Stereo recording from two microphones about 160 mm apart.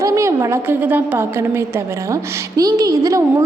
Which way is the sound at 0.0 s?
20° right (ahead or behind).